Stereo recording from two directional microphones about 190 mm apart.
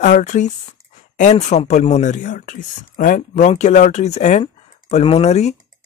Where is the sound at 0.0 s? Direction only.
40° left (ahead or behind).